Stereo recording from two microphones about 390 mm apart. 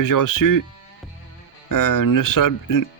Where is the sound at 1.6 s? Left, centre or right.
Left.